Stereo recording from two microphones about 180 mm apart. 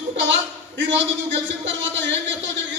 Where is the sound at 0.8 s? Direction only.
90° right.